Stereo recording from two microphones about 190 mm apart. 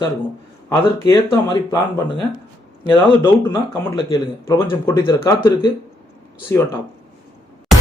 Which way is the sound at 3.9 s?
15° left (ahead or behind).